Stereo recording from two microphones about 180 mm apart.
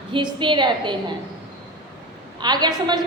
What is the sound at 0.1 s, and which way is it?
A woman's voice, 25° right (ahead or behind).